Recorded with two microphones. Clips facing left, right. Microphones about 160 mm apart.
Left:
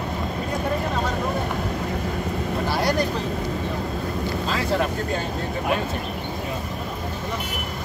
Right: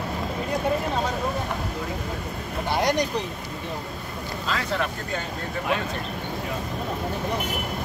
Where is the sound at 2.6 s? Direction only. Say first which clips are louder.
Right 1 dB; 20° right (ahead or behind).